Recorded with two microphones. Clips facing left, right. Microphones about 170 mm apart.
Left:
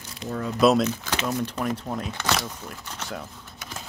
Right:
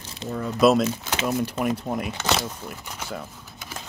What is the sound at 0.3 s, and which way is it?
Speech, centre (ahead or behind).